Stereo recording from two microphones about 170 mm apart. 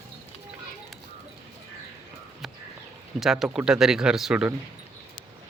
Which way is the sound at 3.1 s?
Centre (ahead or behind).